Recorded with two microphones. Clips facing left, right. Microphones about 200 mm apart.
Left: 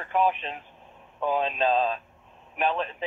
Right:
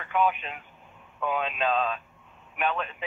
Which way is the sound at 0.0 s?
35° left (ahead or behind).